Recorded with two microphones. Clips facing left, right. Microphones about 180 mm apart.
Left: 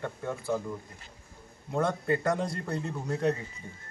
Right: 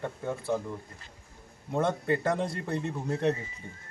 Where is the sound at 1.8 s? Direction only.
25° right (ahead or behind).